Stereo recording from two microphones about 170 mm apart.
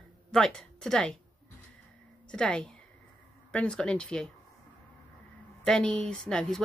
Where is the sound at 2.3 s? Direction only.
5° left (ahead or behind).